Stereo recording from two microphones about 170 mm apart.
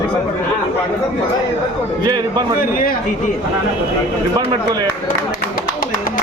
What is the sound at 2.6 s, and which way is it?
Speech, 55° left (ahead or behind).